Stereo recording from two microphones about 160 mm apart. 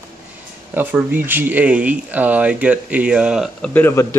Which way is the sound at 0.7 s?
10° right (ahead or behind).